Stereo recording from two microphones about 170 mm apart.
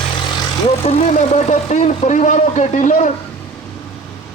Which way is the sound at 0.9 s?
40° left (ahead or behind).